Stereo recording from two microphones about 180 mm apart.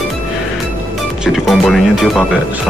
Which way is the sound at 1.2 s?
Centre (ahead or behind).